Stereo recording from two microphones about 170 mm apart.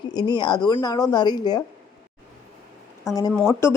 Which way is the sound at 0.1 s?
25° left (ahead or behind).